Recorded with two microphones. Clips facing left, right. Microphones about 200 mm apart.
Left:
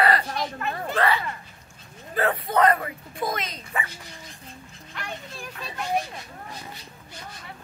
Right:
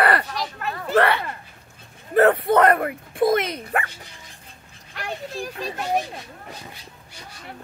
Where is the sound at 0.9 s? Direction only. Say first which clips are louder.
Right 6 dB; 65° right (ahead or behind).